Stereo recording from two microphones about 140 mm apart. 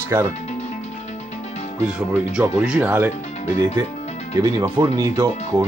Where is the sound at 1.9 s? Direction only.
5° right (ahead or behind).